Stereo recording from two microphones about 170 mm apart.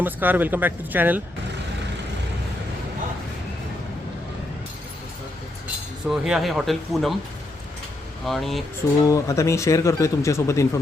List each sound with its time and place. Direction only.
0.0 s speech: 10° right (ahead or behind)
6.1 s speech: centre (ahead or behind)
8.3 s speech: centre (ahead or behind)
9.0 s speech: 20° left (ahead or behind)